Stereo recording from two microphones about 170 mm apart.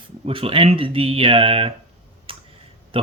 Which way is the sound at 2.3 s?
30° right (ahead or behind).